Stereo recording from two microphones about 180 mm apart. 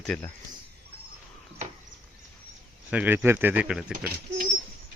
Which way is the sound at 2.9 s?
10° right (ahead or behind).